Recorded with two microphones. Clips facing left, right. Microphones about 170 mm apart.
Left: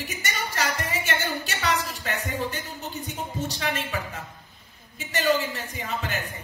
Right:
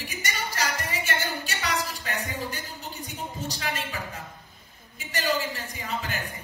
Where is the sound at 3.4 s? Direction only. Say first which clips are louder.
Left 1 dB; 35° right (ahead or behind).